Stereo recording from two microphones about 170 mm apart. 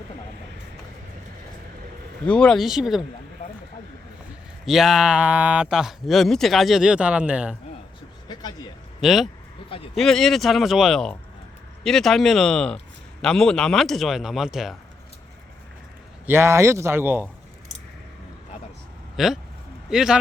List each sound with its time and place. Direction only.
2.2 s speech: 5° left (ahead or behind)
4.6 s speech: centre (ahead or behind)
8.3 s a sound: 25° left (ahead or behind)
9.0 s speech: centre (ahead or behind)
9.6 s speech: 30° left (ahead or behind)
9.9 s speech: centre (ahead or behind)
16.2 s a man's voice: 15° right (ahead or behind)
19.1 s speech: centre (ahead or behind)